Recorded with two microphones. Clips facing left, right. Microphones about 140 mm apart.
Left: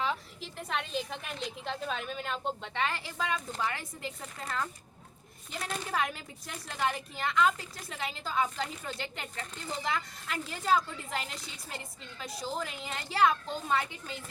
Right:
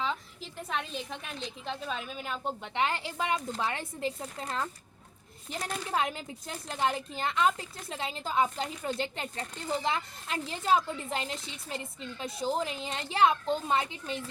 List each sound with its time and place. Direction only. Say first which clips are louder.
0.0 s a woman's voice: even; centre (ahead or behind)
2.7 s speech: right 6 dB; 20° right (ahead or behind)